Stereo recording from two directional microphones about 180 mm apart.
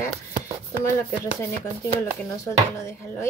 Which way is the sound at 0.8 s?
15° left (ahead or behind).